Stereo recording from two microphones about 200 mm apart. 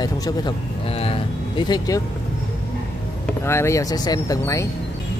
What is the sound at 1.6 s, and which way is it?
Speech, 20° left (ahead or behind).